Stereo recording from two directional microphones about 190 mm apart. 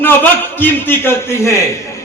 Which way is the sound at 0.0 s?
10° left (ahead or behind).